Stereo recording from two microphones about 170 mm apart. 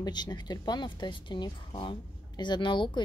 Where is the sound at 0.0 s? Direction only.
25° left (ahead or behind).